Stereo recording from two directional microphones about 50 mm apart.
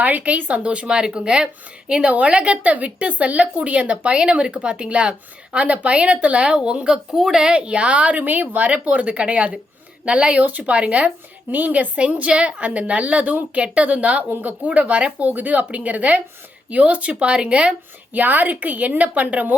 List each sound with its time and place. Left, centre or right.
0.0 s a woman's voice: right
10.4 s a woman's voice: right
18.1 s speech: right